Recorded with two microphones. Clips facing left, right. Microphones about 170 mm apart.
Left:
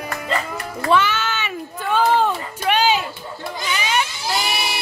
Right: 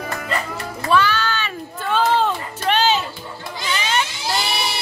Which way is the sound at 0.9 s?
20° left (ahead or behind).